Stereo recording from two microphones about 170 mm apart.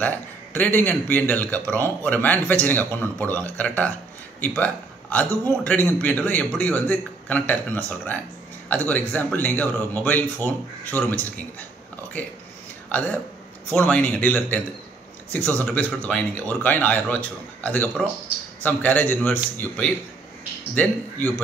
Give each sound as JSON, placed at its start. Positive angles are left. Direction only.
{"t": 0.0, "sound": "a man's voice", "side_deg": 10}
{"t": 12.9, "sound": "a man's voice", "side_deg": 10}